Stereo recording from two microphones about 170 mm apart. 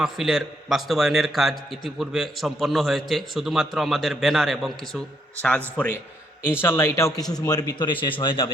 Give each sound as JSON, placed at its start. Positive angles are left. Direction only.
{"t": 0.0, "sound": "a man's voice", "side_deg": 0}
{"t": 7.3, "sound": "a man's voice", "side_deg": 5}
{"t": 7.5, "sound": "a man's voice", "side_deg": 25}